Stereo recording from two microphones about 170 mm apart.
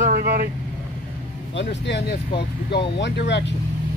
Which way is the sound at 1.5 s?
90° left.